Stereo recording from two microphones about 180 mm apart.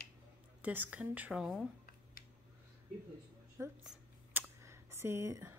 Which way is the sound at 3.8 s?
5° right (ahead or behind).